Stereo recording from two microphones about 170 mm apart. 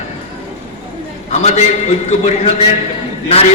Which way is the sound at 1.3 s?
40° left (ahead or behind).